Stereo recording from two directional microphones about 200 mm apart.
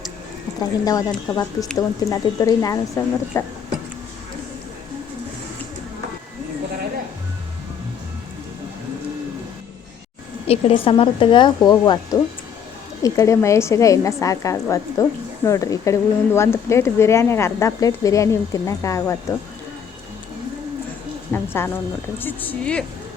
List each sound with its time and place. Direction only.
0.9 s speech: 15° left (ahead or behind)
10.4 s speech: 30° left (ahead or behind)
21.3 s speech: 10° left (ahead or behind)